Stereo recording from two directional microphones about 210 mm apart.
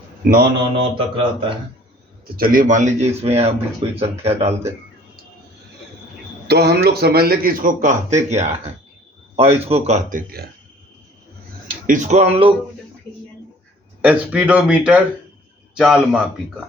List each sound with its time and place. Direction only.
0.8 s speech: 25° right (ahead or behind)
2.3 s speech: 45° right (ahead or behind)
6.5 s a man's voice: 50° right (ahead or behind)
11.9 s speech: 35° right (ahead or behind)
14.0 s speech: 5° right (ahead or behind)